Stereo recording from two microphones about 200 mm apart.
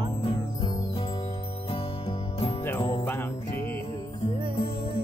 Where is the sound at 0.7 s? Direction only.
30° left (ahead or behind).